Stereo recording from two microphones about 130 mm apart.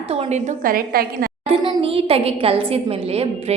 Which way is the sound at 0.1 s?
55° right (ahead or behind).